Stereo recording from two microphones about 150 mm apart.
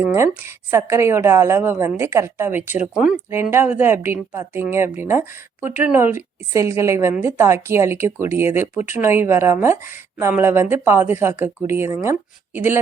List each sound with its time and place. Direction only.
0.1 s a woman's voice: 15° right (ahead or behind)